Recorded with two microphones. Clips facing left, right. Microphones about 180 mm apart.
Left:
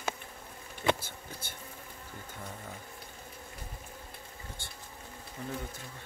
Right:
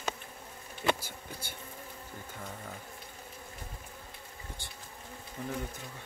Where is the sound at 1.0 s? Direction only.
10° right (ahead or behind).